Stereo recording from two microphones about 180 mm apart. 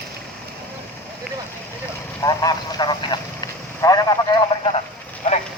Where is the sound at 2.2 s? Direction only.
20° left (ahead or behind).